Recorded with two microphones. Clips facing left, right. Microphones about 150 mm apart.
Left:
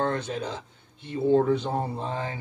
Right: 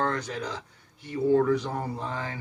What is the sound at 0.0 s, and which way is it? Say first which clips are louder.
Speech: left 2 dB; 25° left (ahead or behind).